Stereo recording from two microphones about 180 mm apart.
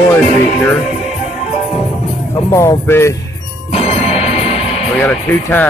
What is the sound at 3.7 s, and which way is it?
Music, 35° left (ahead or behind).